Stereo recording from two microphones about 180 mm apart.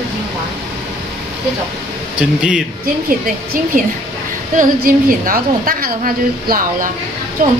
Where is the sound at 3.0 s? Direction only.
55° right (ahead or behind).